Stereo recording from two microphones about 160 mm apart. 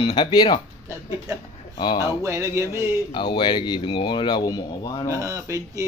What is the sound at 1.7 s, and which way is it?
Speech, 30° left (ahead or behind).